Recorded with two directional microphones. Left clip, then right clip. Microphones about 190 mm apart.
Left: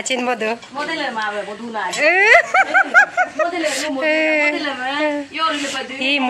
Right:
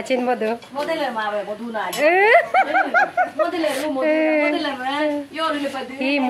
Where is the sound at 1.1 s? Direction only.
55° right (ahead or behind).